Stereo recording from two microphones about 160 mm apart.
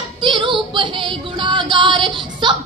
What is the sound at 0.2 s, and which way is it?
Female singing, 30° right (ahead or behind).